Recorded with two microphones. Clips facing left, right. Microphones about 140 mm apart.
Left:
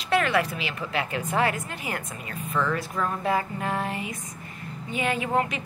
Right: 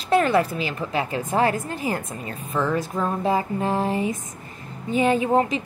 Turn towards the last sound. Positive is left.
turn(degrees=-35)  # may be behind; listen again after turning